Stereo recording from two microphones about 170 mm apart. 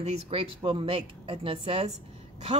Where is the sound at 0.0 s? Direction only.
35° right (ahead or behind).